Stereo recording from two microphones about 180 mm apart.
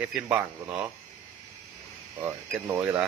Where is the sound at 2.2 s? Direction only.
10° right (ahead or behind).